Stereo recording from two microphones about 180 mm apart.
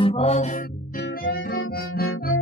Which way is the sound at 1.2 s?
90° left.